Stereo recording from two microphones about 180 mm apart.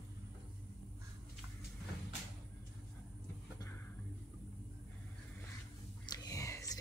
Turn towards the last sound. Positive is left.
turn(degrees=20)  # may be behind; listen again after turning